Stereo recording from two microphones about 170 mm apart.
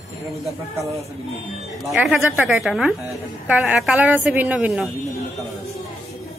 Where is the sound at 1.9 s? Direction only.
Centre (ahead or behind).